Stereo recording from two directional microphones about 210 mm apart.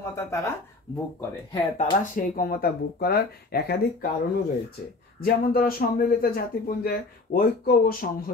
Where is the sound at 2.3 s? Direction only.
45° left (ahead or behind).